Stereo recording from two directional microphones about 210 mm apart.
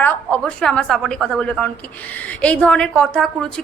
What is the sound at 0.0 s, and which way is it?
A woman's voice, 5° left (ahead or behind).